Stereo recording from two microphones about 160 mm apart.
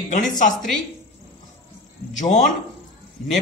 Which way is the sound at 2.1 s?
50° left (ahead or behind).